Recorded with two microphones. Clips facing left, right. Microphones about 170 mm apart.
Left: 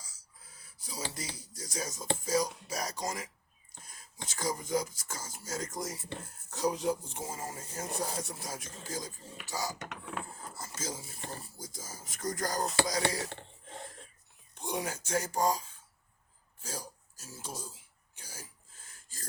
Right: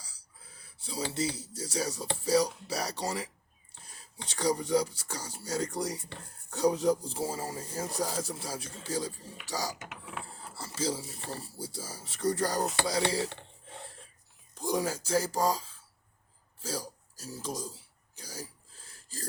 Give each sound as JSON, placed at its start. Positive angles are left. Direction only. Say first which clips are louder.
{"t": 0.0, "sound": "a sound", "louder": "right 1 dB", "side_deg": -30}
{"t": 1.5, "sound": "speech", "louder": "right 6 dB", "side_deg": -35}
{"t": 4.3, "sound": "speech", "louder": "right 5 dB", "side_deg": -35}
{"t": 10.8, "sound": "speech", "louder": "right 9 dB", "side_deg": -30}
{"t": 14.6, "sound": "speech", "louder": "right 5 dB", "side_deg": -35}
{"t": 17.2, "sound": "a sound", "louder": "right 7 dB", "side_deg": -35}